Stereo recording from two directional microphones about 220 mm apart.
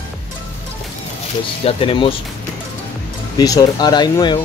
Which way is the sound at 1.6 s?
25° left (ahead or behind).